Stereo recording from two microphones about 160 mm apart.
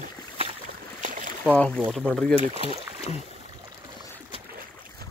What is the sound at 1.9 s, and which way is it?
Speech, 5° left (ahead or behind).